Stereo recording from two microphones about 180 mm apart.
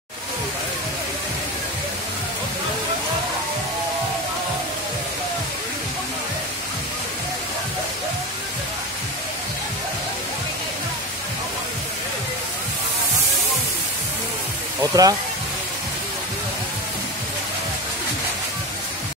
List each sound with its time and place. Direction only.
14.8 s speech: 20° right (ahead or behind)